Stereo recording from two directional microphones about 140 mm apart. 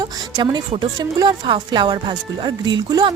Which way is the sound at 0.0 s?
30° right (ahead or behind).